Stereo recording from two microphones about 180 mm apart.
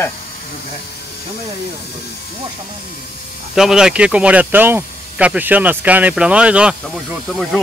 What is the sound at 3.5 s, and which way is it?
Speech, 5° right (ahead or behind).